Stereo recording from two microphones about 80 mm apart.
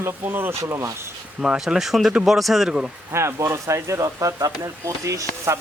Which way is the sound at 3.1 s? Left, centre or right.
Right.